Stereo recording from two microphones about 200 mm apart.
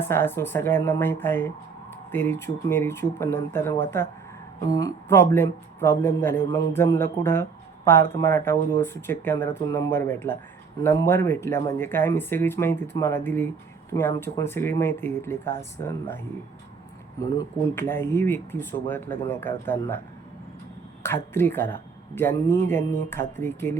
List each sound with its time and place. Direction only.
0.0 s speech: 10° left (ahead or behind)
17.2 s speech: 15° left (ahead or behind)
21.0 s speech: 10° left (ahead or behind)